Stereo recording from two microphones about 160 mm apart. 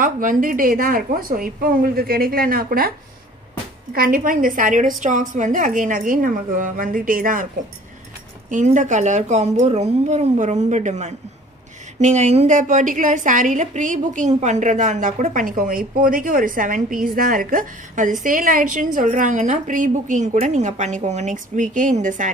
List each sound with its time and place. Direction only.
0.0 s a woman's voice: 55° right (ahead or behind)
3.9 s a woman's voice: 65° right (ahead or behind)
8.5 s a woman's voice: 50° right (ahead or behind)